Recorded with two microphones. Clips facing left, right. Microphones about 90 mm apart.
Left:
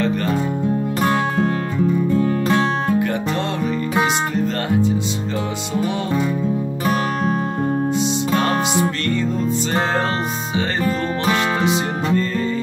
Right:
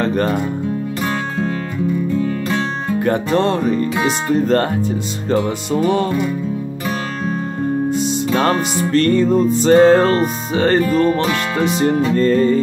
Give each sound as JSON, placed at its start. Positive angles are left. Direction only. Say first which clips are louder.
{"t": 0.0, "sound": "music", "louder": "right 3 dB", "side_deg": -35}
{"t": 3.0, "sound": "music", "louder": "right 5 dB", "side_deg": -40}
{"t": 8.9, "sound": "music", "louder": "right 8 dB", "side_deg": -45}
{"t": 12.2, "sound": "music", "louder": "right 8 dB", "side_deg": -45}